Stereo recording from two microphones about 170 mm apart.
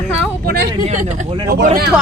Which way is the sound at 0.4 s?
70° right (ahead or behind).